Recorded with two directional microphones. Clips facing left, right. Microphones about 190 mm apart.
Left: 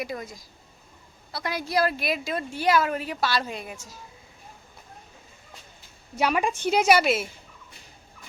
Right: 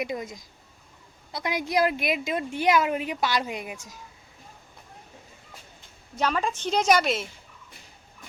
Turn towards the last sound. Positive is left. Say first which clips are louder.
# left 2 dB
turn(degrees=5)  # may be behind; listen again after turning